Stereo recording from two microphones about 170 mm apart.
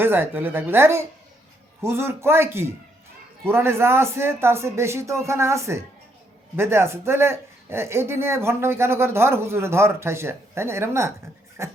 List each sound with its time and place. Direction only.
0.0 s a man's voice: 10° right (ahead or behind)